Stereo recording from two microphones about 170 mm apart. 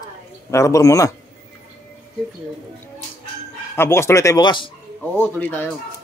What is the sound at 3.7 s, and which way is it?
Speech, 15° left (ahead or behind).